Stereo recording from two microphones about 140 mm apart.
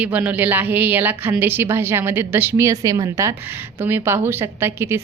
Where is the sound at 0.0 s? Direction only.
10° right (ahead or behind).